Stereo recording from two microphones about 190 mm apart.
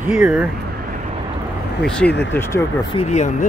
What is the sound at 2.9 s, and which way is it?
Speech, 35° left (ahead or behind).